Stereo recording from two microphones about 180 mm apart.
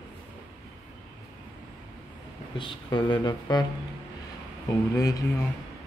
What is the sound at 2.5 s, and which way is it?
Speech, 25° left (ahead or behind).